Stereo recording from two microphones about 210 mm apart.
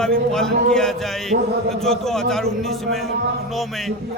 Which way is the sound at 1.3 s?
55° right (ahead or behind).